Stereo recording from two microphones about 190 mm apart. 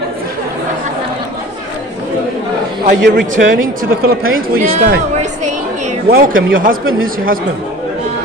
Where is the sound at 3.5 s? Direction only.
50° right (ahead or behind).